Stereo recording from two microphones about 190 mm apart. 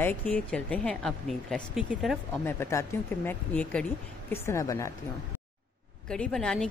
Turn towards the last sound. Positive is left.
turn(degrees=5)  # may be behind; listen again after turning